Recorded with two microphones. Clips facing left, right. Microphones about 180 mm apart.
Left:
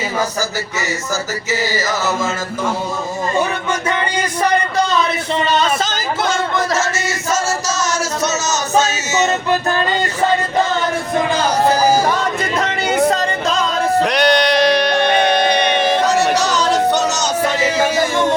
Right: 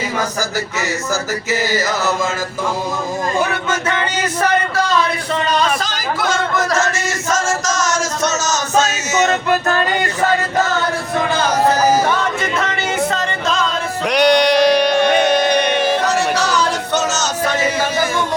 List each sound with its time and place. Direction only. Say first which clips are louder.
3.7 s music: even; 10° left (ahead or behind)
5.3 s speech: left 1 dB; 25° left (ahead or behind)
8.2 s music: even; 5° left (ahead or behind)
12.0 s music: even; 35° left (ahead or behind)
14.0 s music: right 5 dB; 10° right (ahead or behind)
16.9 s music: left 1 dB; 15° left (ahead or behind)